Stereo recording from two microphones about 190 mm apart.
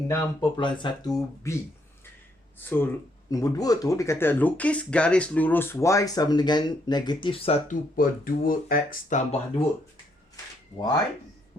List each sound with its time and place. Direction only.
0.1 s speech: 15° left (ahead or behind)
2.6 s speech: 10° left (ahead or behind); by 9.6 s 40° left (ahead or behind)
10.8 s speech: 20° left (ahead or behind)